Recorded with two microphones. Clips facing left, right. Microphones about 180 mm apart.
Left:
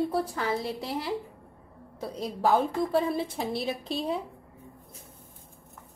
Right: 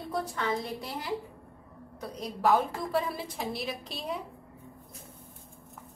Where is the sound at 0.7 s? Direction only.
25° left (ahead or behind).